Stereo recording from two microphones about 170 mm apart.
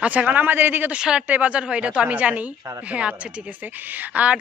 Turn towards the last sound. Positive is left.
turn(degrees=-10)  # may be behind; listen again after turning